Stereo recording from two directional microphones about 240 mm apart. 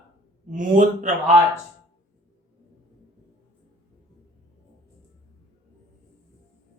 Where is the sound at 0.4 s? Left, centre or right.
Right.